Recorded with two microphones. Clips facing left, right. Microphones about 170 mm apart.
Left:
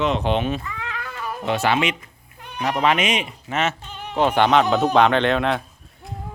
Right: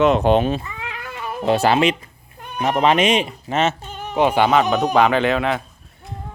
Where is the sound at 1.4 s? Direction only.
35° right (ahead or behind).